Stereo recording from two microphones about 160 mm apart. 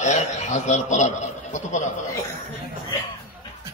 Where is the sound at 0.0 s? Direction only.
45° left (ahead or behind).